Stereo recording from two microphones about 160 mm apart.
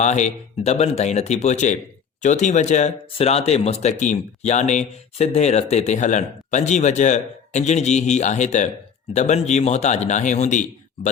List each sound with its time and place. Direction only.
0.0 s speech: 45° left (ahead or behind)